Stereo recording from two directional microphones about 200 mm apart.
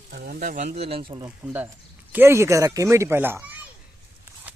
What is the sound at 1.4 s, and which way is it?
Speech, 10° right (ahead or behind).